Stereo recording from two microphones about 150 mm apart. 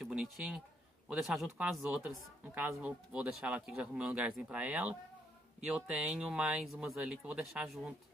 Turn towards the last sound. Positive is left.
turn(degrees=-5)  # may be behind; listen again after turning